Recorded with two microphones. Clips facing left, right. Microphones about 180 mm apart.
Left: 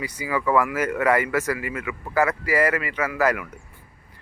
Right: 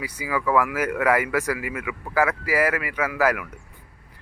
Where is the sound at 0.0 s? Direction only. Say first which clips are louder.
Left 1 dB; 10° right (ahead or behind).